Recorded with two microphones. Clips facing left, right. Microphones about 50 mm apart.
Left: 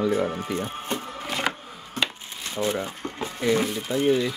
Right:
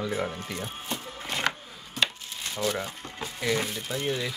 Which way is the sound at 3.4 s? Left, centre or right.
Centre.